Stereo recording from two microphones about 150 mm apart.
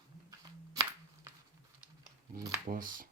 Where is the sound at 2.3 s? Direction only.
25° right (ahead or behind).